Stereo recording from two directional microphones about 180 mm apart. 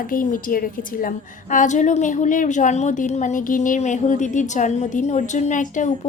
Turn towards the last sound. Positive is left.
turn(degrees=45)  # may be behind; listen again after turning